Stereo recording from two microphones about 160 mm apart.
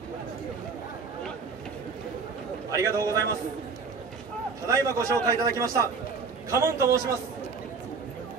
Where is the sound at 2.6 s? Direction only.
20° right (ahead or behind).